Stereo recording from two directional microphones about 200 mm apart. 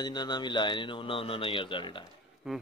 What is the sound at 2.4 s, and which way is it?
Speech, 5° right (ahead or behind).